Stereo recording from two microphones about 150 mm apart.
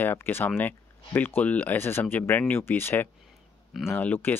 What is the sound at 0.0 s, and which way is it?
Speech, 15° left (ahead or behind).